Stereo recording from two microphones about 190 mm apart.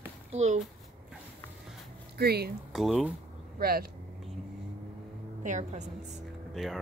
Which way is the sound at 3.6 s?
50° right (ahead or behind).